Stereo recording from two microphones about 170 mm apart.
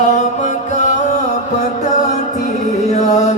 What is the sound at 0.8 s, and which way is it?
Music, 45° left (ahead or behind).